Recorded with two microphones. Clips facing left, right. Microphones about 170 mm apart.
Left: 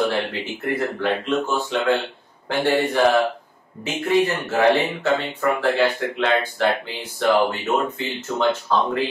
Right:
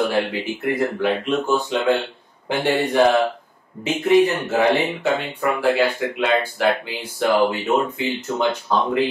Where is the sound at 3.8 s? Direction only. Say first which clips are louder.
Right 4 dB; 20° right (ahead or behind).